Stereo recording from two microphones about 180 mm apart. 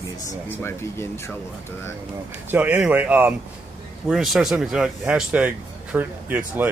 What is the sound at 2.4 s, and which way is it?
A man's voice, 10° right (ahead or behind).